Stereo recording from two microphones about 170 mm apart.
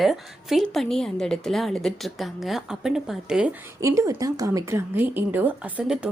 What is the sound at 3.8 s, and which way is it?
Speech, 20° right (ahead or behind).